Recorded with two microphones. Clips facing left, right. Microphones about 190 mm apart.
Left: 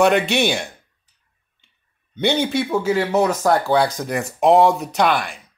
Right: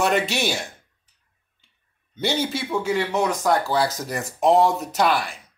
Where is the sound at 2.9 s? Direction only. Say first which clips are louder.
Left 4 dB; 40° left (ahead or behind).